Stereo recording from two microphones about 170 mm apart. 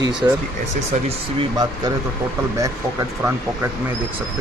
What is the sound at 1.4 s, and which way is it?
Speech, 25° right (ahead or behind).